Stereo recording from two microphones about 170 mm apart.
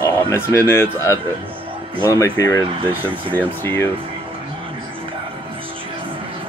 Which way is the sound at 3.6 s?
15° left (ahead or behind).